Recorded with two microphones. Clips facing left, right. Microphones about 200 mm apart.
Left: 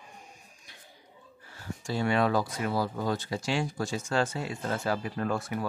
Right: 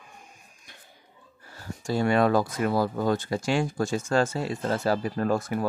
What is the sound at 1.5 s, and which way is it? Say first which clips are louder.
Speech: right 5 dB; 40° right (ahead or behind).